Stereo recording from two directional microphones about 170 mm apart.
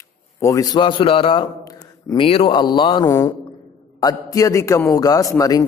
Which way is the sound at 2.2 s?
30° left (ahead or behind).